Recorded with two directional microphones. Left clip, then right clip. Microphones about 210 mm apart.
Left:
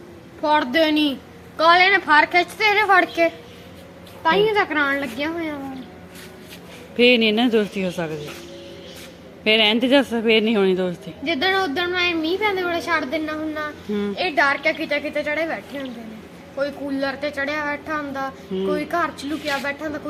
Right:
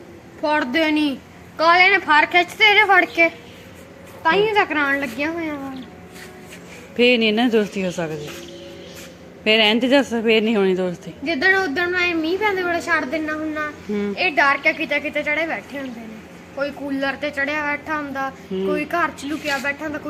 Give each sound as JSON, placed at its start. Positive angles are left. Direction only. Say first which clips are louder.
{"t": 0.4, "sound": "a woman's voice", "louder": "left 1 dB", "side_deg": 5}
{"t": 4.2, "sound": "a child's voice", "louder": "even", "side_deg": -10}
{"t": 4.5, "sound": "a woman's voice", "louder": "right 1 dB", "side_deg": -25}
{"t": 6.9, "sound": "speech", "louder": "even", "side_deg": 0}
{"t": 9.4, "sound": "speech", "louder": "right 1 dB", "side_deg": 0}